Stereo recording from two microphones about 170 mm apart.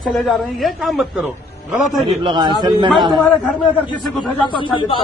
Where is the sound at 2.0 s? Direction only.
25° right (ahead or behind).